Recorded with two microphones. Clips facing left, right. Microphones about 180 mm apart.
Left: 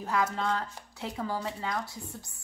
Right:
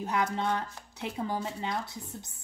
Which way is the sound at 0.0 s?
20° right (ahead or behind).